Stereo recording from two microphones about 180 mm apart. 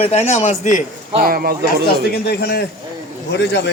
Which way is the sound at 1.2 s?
55° right (ahead or behind).